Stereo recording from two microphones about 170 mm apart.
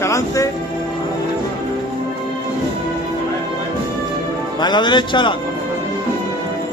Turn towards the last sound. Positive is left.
turn(degrees=30)  # may be behind; listen again after turning